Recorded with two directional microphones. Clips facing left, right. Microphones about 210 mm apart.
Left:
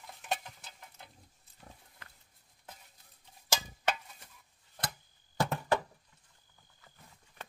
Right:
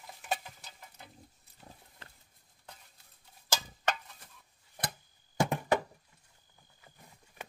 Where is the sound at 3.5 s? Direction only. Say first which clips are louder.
Even; 10° left (ahead or behind).